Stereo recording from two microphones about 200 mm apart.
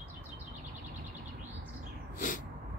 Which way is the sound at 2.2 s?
40° left (ahead or behind).